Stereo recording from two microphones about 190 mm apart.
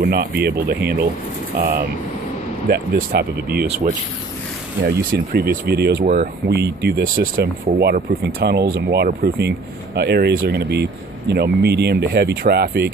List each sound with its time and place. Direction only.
0.0 s speech: 50° right (ahead or behind)